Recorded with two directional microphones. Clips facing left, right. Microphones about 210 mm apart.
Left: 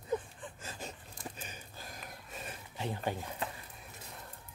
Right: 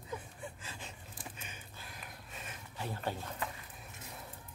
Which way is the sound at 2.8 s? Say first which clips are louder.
Left 2 dB; 15° left (ahead or behind).